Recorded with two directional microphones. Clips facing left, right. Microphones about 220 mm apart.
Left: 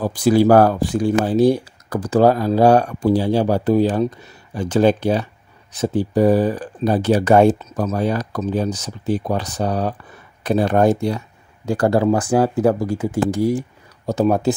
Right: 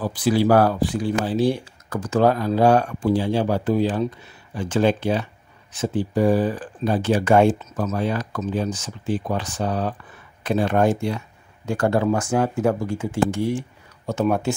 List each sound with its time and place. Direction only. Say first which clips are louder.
0.0 s speech: left 5 dB; 45° left (ahead or behind)